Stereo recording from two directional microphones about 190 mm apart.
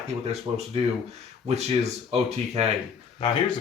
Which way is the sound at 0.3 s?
35° right (ahead or behind).